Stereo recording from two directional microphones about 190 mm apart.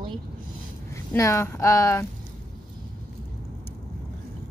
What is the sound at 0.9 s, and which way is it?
Speech, 15° left (ahead or behind).